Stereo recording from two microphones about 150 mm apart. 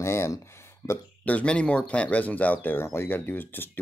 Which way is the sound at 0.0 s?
20° left (ahead or behind).